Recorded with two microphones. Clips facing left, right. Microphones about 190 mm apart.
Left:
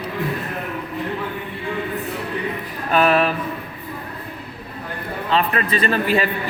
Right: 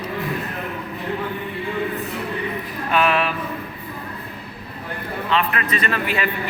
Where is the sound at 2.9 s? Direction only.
40° left (ahead or behind).